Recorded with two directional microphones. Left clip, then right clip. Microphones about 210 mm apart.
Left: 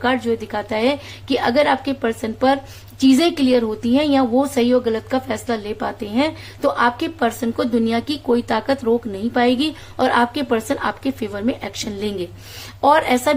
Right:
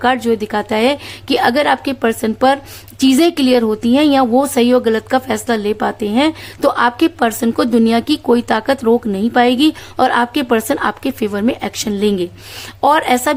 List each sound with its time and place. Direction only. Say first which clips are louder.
0.0 s a woman's voice: right 5 dB; 45° right (ahead or behind)